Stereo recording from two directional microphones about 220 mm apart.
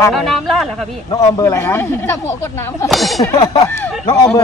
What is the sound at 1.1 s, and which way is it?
Speech, 15° left (ahead or behind).